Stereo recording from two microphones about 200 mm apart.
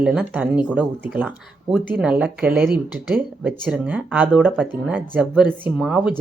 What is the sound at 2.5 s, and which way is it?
Speech, 50° right (ahead or behind).